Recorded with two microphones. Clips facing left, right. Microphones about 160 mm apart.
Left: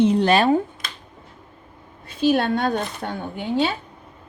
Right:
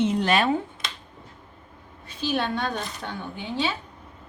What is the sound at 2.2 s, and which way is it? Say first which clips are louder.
Speech: left 7 dB; 55° left (ahead or behind).